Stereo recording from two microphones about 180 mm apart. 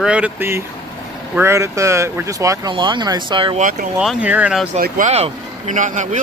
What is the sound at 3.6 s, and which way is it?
Speech, 50° right (ahead or behind).